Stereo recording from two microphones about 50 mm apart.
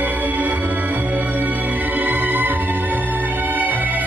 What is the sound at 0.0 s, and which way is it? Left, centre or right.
Music, right.